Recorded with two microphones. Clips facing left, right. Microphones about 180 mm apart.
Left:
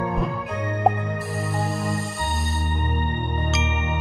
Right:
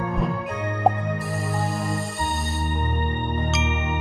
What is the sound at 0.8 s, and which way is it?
Music, centre (ahead or behind).